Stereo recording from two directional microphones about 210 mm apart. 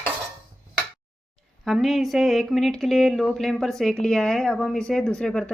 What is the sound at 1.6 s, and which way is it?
Speech, centre (ahead or behind).